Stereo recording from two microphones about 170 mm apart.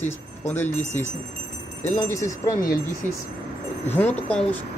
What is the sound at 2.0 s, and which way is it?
Speech, 20° left (ahead or behind).